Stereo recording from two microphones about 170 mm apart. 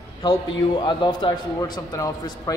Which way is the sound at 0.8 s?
25° left (ahead or behind).